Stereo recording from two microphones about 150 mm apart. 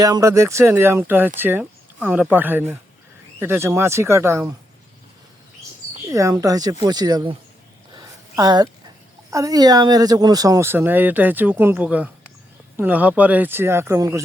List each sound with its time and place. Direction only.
0.0 s speech: 25° right (ahead or behind)
6.1 s speech: 20° right (ahead or behind)
7.9 s a sound: 25° right (ahead or behind)
9.3 s speech: 25° right (ahead or behind)